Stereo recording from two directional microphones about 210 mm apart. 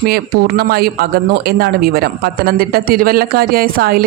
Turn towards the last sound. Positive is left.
turn(degrees=-45)  # may be behind; listen again after turning